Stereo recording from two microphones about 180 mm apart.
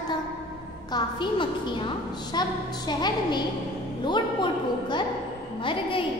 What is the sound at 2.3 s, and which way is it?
A woman's voice, 25° left (ahead or behind).